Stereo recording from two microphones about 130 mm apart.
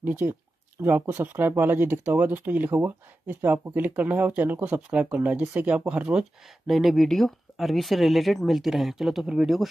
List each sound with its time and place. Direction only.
0.0 s speech: 15° right (ahead or behind)